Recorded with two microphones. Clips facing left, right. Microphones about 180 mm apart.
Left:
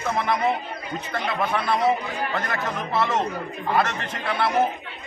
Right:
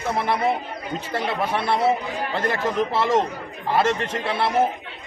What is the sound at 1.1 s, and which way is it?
A man's voice, 30° right (ahead or behind).